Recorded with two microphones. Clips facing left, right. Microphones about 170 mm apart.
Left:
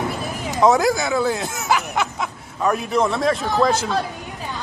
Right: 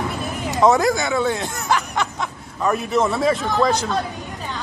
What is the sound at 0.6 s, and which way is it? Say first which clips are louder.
A man's voice: even; centre (ahead or behind).